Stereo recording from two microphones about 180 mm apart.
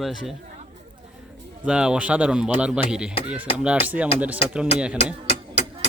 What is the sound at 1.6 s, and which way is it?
A man's voice, 5° right (ahead or behind).